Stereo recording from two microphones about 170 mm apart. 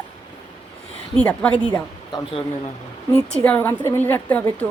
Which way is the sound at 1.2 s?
10° left (ahead or behind).